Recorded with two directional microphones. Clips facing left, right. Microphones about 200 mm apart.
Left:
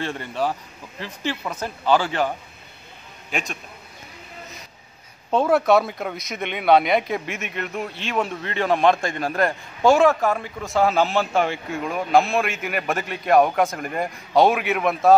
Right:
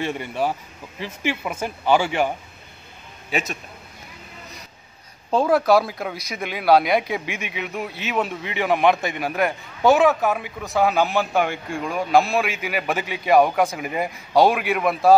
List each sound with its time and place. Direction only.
0.0 s a man's voice: 10° right (ahead or behind)
5.3 s speech: centre (ahead or behind)